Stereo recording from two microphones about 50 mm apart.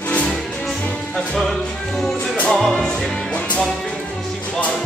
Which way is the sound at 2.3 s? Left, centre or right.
Left.